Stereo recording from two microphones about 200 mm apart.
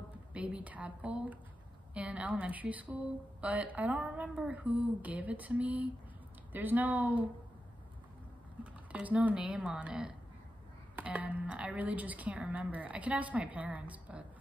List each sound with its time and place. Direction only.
0.3 s a woman's voice: 5° right (ahead or behind)
8.9 s a woman's voice: 5° right (ahead or behind)